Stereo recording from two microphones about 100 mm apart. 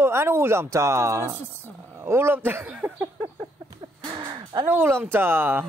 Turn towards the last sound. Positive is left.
turn(degrees=-20)  # may be behind; listen again after turning